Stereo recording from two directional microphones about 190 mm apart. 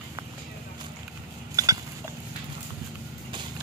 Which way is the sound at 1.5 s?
20° right (ahead or behind).